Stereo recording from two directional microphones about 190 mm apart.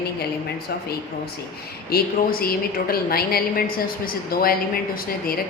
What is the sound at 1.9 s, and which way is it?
A woman's voice, 50° left (ahead or behind).